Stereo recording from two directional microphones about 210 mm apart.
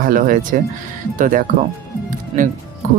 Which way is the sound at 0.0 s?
40° right (ahead or behind).